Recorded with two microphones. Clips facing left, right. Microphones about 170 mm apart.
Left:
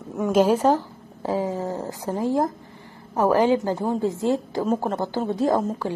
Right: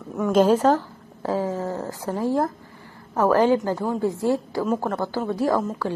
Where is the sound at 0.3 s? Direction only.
10° left (ahead or behind).